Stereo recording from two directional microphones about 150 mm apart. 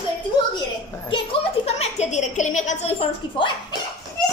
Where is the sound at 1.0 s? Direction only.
40° left (ahead or behind).